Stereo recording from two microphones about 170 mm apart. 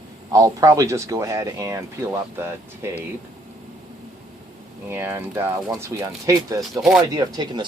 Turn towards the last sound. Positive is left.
turn(degrees=-25)  # may be behind; listen again after turning